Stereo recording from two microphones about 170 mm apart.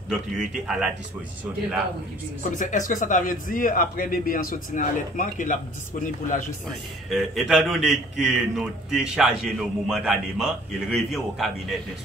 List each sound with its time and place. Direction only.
0.1 s a man's voice: 5° right (ahead or behind)
2.5 s speech: 50° left (ahead or behind)
7.1 s a man's voice: centre (ahead or behind)